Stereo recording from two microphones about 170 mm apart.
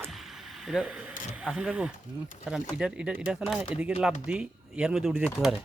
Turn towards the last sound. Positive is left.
turn(degrees=0)  # may be behind; listen again after turning